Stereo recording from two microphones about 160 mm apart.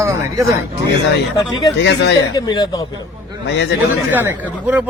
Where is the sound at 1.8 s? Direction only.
90° left.